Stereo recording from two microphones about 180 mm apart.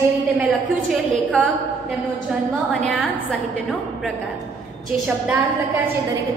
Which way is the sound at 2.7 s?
5° left (ahead or behind).